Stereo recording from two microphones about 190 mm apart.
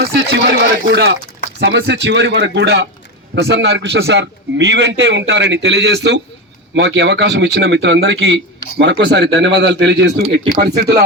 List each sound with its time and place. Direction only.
0.0 s a man's voice: 60° right (ahead or behind)